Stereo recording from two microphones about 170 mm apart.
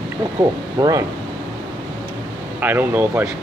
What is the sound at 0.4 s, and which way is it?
Speech, 20° right (ahead or behind).